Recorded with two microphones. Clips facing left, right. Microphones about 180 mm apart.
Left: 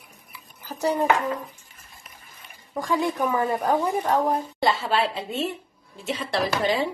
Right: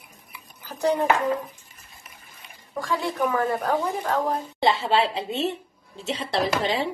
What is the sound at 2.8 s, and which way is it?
Speech, 15° left (ahead or behind).